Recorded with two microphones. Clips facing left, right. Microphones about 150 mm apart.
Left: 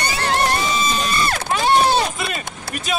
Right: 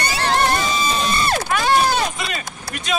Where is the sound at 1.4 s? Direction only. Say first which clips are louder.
Left 3 dB; 25° left (ahead or behind).